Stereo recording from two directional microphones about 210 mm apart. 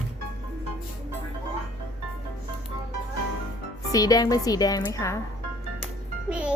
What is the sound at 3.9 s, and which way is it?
A woman's voice, 15° left (ahead or behind).